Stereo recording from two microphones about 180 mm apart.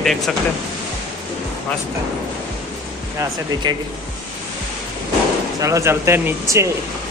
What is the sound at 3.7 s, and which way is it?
Speech, 25° right (ahead or behind).